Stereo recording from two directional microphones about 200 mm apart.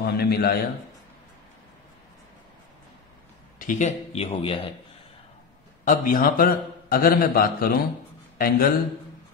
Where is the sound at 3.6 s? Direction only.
40° left (ahead or behind).